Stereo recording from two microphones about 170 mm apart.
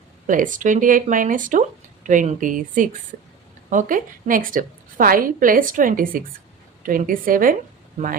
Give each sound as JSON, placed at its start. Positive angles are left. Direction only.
{"t": 0.3, "sound": "a woman's voice", "side_deg": -50}